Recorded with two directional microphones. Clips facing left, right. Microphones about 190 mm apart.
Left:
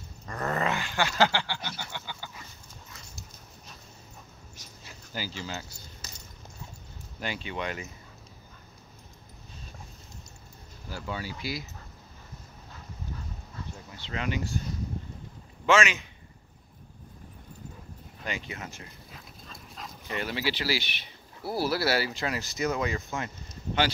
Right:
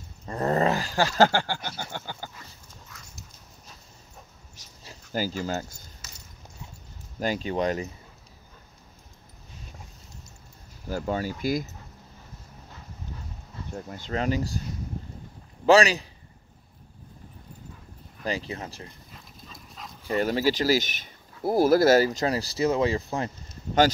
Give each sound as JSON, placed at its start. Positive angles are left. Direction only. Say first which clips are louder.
{"t": 0.3, "sound": "dog", "louder": "right 6 dB", "side_deg": -30}
{"t": 4.8, "sound": "speech", "louder": "right 8 dB", "side_deg": -45}
{"t": 7.2, "sound": "speech", "louder": "right 8 dB", "side_deg": -40}
{"t": 10.9, "sound": "speech", "louder": "right 8 dB", "side_deg": -45}
{"t": 13.7, "sound": "speech", "louder": "right 8 dB", "side_deg": -50}
{"t": 15.6, "sound": "speech", "louder": "right 6 dB", "side_deg": -35}
{"t": 18.2, "sound": "speech", "louder": "right 6 dB", "side_deg": -35}
{"t": 19.1, "sound": "dog", "louder": "even", "side_deg": 0}
{"t": 20.1, "sound": "speech", "louder": "right 8 dB", "side_deg": -40}